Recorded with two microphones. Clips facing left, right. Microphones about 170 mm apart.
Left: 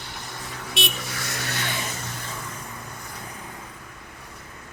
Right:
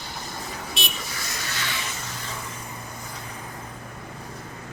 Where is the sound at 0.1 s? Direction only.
70° left (ahead or behind); by 1.9 s 50° left (ahead or behind).